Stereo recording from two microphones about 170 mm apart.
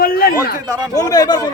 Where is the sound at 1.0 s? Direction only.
20° left (ahead or behind).